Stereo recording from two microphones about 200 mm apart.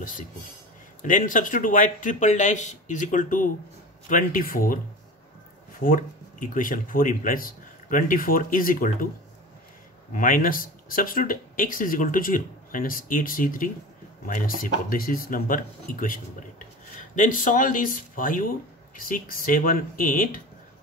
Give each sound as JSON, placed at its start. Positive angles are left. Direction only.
{"t": 1.0, "sound": "speech", "side_deg": 40}
{"t": 6.4, "sound": "speech", "side_deg": 45}
{"t": 10.1, "sound": "speech", "side_deg": 45}